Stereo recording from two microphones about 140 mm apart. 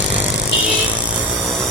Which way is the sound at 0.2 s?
10° right (ahead or behind).